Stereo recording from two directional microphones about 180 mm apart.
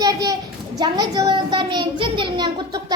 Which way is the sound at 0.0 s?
20° right (ahead or behind).